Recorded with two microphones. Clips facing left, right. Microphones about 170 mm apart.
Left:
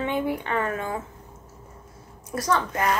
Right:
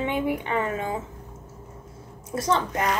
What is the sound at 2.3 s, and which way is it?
Speech, 25° right (ahead or behind).